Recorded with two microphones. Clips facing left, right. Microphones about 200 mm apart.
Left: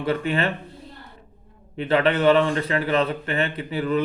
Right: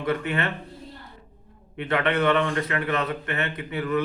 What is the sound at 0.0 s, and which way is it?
Speech, 30° left (ahead or behind).